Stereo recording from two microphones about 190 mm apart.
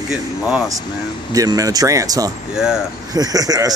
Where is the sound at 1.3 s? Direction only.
20° right (ahead or behind).